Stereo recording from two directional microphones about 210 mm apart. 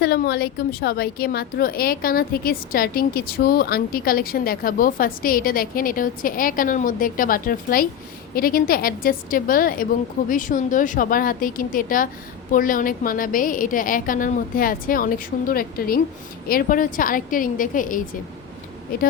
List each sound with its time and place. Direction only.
0.0 s a woman's voice: 50° left (ahead or behind)